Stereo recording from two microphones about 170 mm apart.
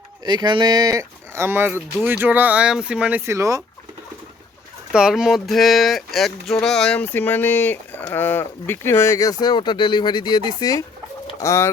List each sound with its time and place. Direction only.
0.3 s speech: 25° right (ahead or behind)
4.9 s speech: 5° right (ahead or behind); by 11.7 s 15° left (ahead or behind)